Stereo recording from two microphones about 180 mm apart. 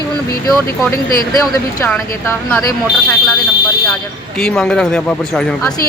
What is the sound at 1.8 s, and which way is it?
Speech, 15° left (ahead or behind).